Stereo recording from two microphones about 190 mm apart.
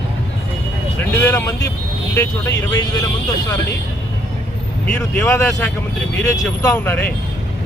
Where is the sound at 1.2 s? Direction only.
10° left (ahead or behind).